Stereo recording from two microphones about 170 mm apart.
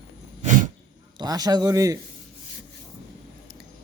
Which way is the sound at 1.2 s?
20° right (ahead or behind).